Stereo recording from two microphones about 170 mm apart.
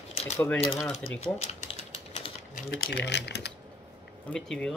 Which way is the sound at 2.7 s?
85° left.